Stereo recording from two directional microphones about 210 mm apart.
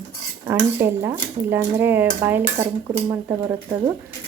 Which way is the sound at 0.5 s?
10° right (ahead or behind).